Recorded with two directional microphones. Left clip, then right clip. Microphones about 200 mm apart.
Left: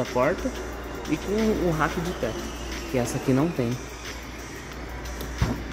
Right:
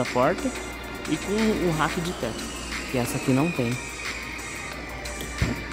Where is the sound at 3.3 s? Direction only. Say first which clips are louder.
Even; 5° right (ahead or behind).